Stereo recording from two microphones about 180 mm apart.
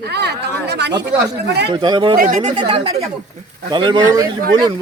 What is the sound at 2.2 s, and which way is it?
Speech, 45° right (ahead or behind).